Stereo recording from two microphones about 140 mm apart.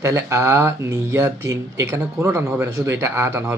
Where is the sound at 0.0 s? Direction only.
20° right (ahead or behind).